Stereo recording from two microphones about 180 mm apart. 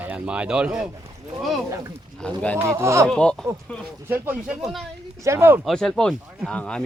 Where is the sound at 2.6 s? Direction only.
15° right (ahead or behind).